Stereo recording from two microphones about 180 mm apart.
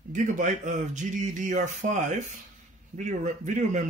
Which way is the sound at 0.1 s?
45° right (ahead or behind).